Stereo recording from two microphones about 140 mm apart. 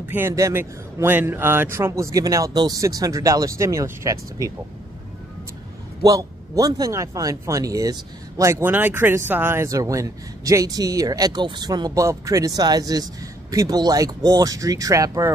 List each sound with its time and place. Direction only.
0.1 s speech: 20° right (ahead or behind)
6.0 s speech: 25° right (ahead or behind)